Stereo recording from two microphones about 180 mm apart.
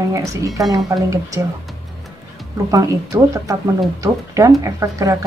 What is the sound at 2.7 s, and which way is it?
Speech, 20° right (ahead or behind).